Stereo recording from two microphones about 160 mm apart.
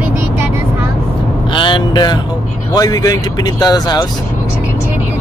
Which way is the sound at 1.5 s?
30° left (ahead or behind).